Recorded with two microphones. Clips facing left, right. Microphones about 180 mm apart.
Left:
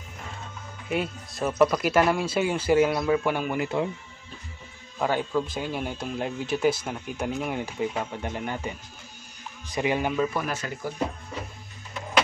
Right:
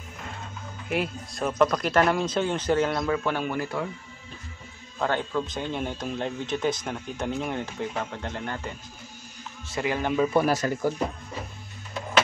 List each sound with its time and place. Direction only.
0.8 s speech: centre (ahead or behind)
3.6 s speech: 20° left (ahead or behind)
4.9 s speech: 10° left (ahead or behind)
10.3 s speech: 35° right (ahead or behind)